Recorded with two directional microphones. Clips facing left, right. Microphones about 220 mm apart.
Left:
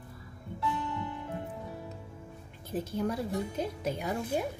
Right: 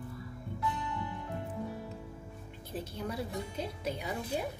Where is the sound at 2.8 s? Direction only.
50° left (ahead or behind).